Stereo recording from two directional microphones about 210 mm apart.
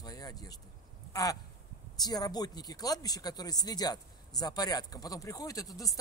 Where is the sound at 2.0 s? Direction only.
20° left (ahead or behind).